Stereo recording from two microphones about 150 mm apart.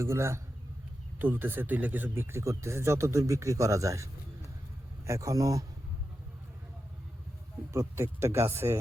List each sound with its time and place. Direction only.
0.0 s speech: 20° right (ahead or behind)
7.7 s speech: 20° right (ahead or behind)